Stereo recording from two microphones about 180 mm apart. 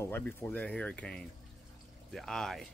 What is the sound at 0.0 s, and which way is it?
Speech, 10° left (ahead or behind).